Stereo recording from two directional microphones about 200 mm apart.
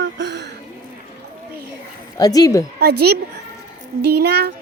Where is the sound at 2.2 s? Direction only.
20° left (ahead or behind).